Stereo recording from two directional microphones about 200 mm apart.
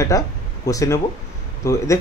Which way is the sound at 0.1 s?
15° left (ahead or behind).